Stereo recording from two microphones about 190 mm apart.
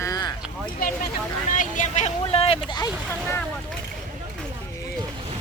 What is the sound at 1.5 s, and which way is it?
Speech, 40° left (ahead or behind).